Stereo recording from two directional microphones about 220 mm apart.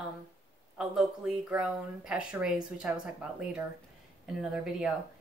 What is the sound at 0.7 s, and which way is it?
A woman's voice, 5° right (ahead or behind).